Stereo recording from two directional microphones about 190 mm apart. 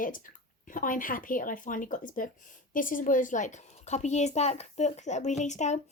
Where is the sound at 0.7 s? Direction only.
45° left (ahead or behind).